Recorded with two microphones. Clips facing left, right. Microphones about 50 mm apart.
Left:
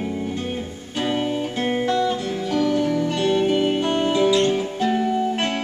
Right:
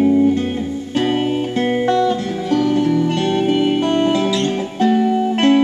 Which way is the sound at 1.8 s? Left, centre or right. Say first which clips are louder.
Right 5 dB; right.